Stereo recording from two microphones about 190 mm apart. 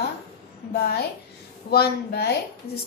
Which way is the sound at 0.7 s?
55° left (ahead or behind).